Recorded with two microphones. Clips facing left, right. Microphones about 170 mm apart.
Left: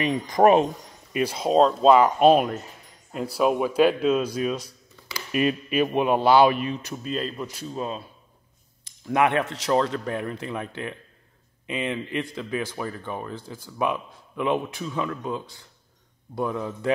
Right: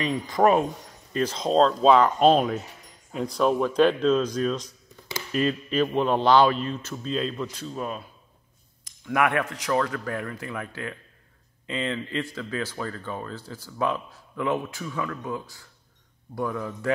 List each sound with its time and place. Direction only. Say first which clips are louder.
0.0 s a man's voice: left 3 dB; 20° left (ahead or behind)
7.1 s speech: right 2 dB; 5° left (ahead or behind)
7.7 s a man's voice: left 1 dB; 25° left (ahead or behind)